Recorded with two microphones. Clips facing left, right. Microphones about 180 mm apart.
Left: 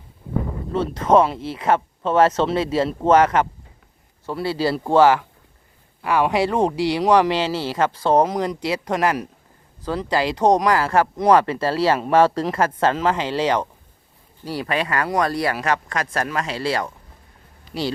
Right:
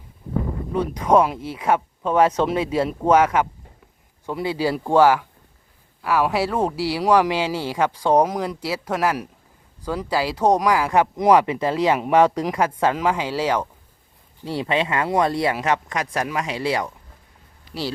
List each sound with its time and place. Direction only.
0.7 s speech: 15° right (ahead or behind)
14.4 s speech: 25° right (ahead or behind)